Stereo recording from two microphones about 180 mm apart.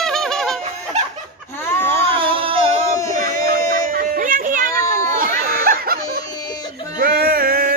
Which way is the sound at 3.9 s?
50° right (ahead or behind).